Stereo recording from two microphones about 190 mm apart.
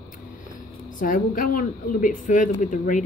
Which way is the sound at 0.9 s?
45° left (ahead or behind).